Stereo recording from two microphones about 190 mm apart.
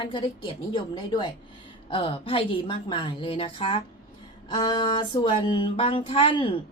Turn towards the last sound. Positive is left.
turn(degrees=30)  # may be behind; listen again after turning